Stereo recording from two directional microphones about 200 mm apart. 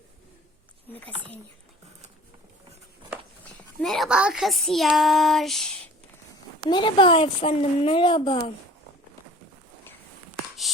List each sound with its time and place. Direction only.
3.8 s speech: centre (ahead or behind)
6.7 s a woman's voice: 25° left (ahead or behind)